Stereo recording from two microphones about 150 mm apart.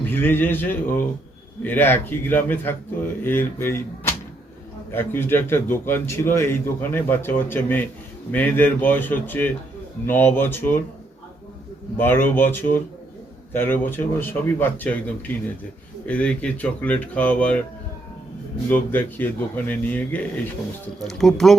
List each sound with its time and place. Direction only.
0.1 s a man's voice: 15° left (ahead or behind)
11.9 s a man's voice: 15° left (ahead or behind)
18.7 s a man's voice: 10° left (ahead or behind)